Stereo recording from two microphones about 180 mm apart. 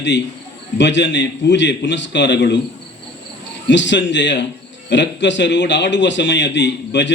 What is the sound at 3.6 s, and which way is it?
A man's voice, 85° left.